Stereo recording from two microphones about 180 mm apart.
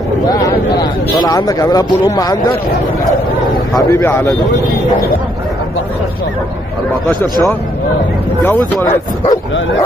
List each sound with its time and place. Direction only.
0.7 s speech: 20° left (ahead or behind)
3.9 s speech: 15° left (ahead or behind)
9.2 s speech: 25° left (ahead or behind)